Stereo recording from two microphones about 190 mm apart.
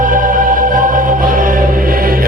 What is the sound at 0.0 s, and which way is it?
Music, 45° right (ahead or behind).